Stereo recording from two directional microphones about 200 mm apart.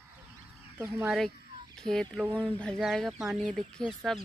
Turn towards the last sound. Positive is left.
turn(degrees=0)  # may be behind; listen again after turning